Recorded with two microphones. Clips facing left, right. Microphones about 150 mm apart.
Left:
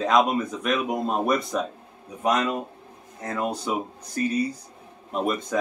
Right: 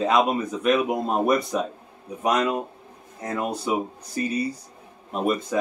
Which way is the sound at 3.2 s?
10° right (ahead or behind).